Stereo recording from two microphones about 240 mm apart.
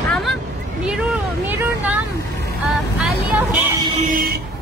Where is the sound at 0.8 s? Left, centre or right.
Centre.